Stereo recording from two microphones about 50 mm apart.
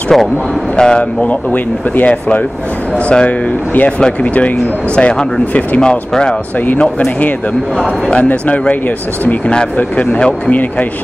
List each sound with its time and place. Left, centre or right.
0.1 s speech: centre
0.7 s speech: centre
5.8 s speech: centre
8.1 s speech: left